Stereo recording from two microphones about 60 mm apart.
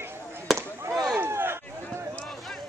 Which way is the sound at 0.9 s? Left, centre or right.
Centre.